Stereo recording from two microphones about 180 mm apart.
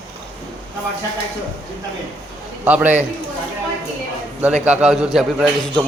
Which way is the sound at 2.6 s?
10° right (ahead or behind).